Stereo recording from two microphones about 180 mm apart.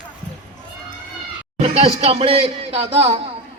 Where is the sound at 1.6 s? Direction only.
35° right (ahead or behind).